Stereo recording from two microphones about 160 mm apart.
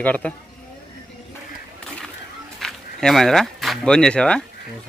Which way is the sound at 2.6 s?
Centre (ahead or behind).